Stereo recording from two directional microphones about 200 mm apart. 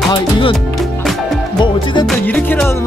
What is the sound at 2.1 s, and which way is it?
Music, 10° left (ahead or behind).